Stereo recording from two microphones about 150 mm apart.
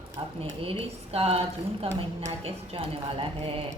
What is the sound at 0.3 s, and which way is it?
A woman's voice, 40° right (ahead or behind).